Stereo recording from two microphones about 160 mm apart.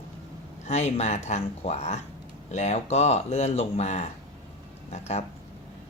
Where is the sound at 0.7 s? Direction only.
45° left (ahead or behind).